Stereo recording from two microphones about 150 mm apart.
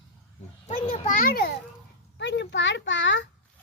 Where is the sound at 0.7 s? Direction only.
60° left (ahead or behind); by 1.5 s 85° left.